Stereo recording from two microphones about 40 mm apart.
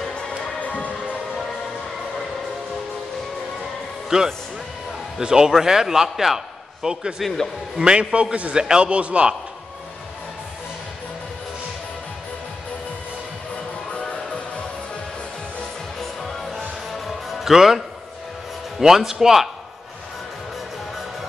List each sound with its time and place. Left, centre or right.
0.6 s music: left
4.1 s a man's voice: right
7.8 s a man's voice: right
13.9 s music: left
16.0 s music: centre
18.8 s speech: centre